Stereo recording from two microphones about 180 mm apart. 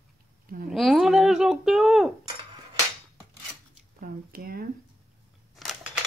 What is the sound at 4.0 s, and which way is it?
Speech, 55° right (ahead or behind).